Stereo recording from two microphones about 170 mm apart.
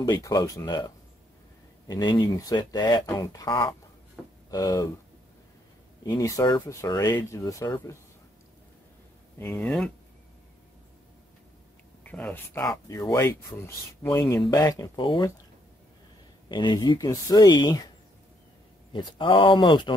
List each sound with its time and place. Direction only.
0.0 s speech: 25° left (ahead or behind)
6.0 s speech: 20° left (ahead or behind)
9.4 s speech: 10° left (ahead or behind)
12.0 s speech: 10° left (ahead or behind)
12.6 s speech: 20° left (ahead or behind)
16.4 s speech: 25° left (ahead or behind)
18.9 s speech: 30° left (ahead or behind)